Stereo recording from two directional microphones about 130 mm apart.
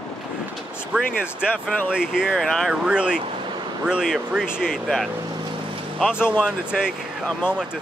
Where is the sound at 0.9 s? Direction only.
10° right (ahead or behind).